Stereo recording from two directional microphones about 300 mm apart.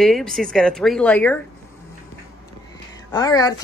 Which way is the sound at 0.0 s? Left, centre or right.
Centre.